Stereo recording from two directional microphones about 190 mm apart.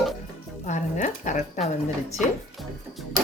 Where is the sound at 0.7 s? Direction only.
40° left (ahead or behind).